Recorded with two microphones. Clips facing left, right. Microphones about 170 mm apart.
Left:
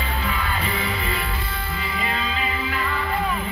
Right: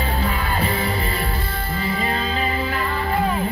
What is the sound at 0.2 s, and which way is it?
Music, 40° right (ahead or behind).